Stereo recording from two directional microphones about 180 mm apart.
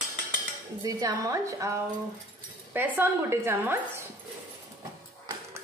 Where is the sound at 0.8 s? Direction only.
20° right (ahead or behind).